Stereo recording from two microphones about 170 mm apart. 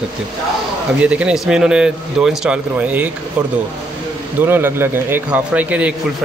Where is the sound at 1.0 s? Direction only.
5° right (ahead or behind).